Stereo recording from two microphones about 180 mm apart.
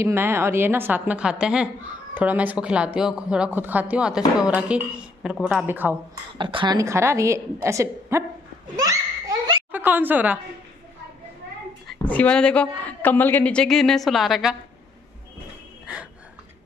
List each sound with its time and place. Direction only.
0.0 s speech: 15° right (ahead or behind)
6.3 s speech: 25° right (ahead or behind)
9.7 s a woman's voice: 10° right (ahead or behind)
11.9 s a woman's voice: 10° left (ahead or behind)